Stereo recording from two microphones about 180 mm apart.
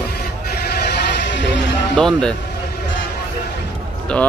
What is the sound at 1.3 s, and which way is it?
Music, 80° left.